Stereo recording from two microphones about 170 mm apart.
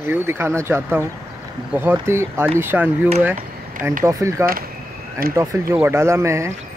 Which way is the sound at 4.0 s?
15° right (ahead or behind).